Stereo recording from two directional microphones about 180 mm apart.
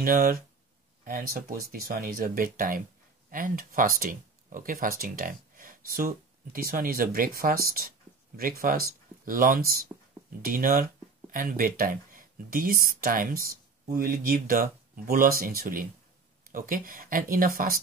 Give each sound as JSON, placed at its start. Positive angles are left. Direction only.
{"t": 0.0, "sound": "speech", "side_deg": -50}